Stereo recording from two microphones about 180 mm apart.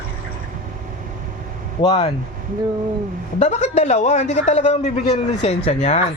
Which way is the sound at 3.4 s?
40° left (ahead or behind).